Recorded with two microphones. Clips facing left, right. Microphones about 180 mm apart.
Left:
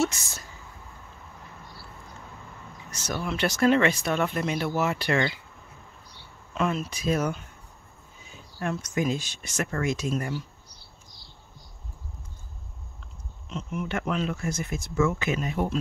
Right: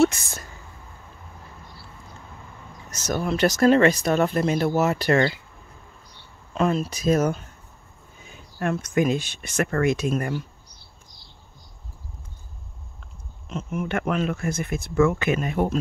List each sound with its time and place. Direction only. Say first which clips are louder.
0.0 s speech: right 7 dB; 55° right (ahead or behind)
2.9 s speech: right 6 dB; 45° right (ahead or behind)
6.5 s speech: right 5 dB; 35° right (ahead or behind)
8.2 s speech: right 5 dB; 60° right (ahead or behind)
13.5 s speech: right 4 dB; 50° right (ahead or behind)